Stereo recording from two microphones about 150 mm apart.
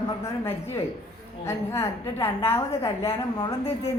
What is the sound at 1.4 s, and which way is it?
A woman's voice, 20° left (ahead or behind).